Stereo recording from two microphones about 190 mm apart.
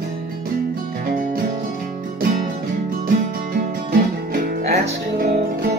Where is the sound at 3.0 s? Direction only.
50° right (ahead or behind).